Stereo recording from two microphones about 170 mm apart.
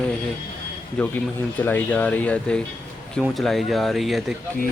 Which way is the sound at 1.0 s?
5° left (ahead or behind).